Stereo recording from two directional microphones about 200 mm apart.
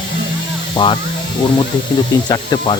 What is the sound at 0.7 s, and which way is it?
Speech, 25° left (ahead or behind).